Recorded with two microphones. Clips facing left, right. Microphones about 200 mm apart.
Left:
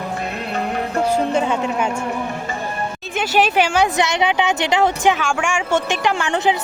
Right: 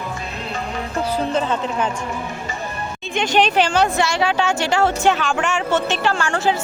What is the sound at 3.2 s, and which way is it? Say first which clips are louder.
A woman's voice: even; 5° left (ahead or behind).